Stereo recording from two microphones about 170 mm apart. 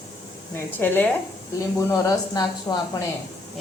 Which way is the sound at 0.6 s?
10° left (ahead or behind).